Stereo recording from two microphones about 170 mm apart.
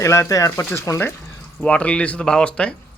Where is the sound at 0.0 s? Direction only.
20° left (ahead or behind).